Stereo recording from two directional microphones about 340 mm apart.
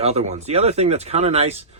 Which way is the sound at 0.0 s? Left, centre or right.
Centre.